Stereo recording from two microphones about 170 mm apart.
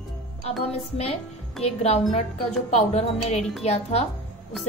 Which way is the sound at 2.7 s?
40° left (ahead or behind).